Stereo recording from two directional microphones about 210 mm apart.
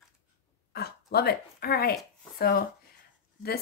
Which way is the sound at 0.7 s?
50° left (ahead or behind).